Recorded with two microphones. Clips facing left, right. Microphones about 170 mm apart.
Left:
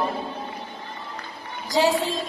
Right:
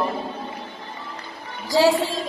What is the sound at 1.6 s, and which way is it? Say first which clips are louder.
Speech: right 3 dB; 20° left (ahead or behind).